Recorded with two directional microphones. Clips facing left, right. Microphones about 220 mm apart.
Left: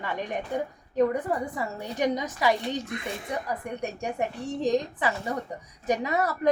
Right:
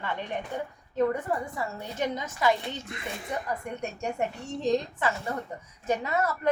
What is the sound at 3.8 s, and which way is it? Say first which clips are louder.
A woman's voice: left 1 dB; 15° left (ahead or behind).